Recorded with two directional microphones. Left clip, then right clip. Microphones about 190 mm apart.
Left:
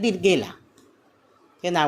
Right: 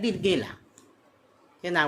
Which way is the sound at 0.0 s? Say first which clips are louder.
Left 5 dB; 15° left (ahead or behind).